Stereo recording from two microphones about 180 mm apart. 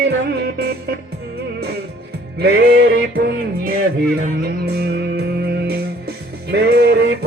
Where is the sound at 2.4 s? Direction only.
60° right (ahead or behind).